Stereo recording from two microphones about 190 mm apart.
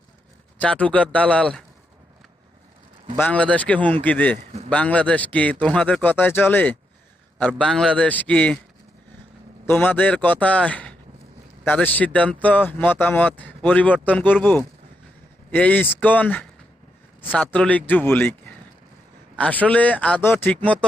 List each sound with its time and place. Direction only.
0.6 s a man's voice: 5° left (ahead or behind)
3.2 s a man's voice: 10° left (ahead or behind)
4.4 s a man's voice: 35° right (ahead or behind)
4.7 s a man's voice: 5° left (ahead or behind)
9.6 s a man's voice: 10° left (ahead or behind)
19.4 s a man's voice: 10° left (ahead or behind)